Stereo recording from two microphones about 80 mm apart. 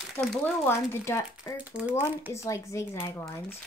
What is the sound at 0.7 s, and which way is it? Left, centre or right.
Speech, left.